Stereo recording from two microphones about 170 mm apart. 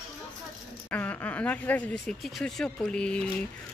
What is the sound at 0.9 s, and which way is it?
Speech, 10° left (ahead or behind).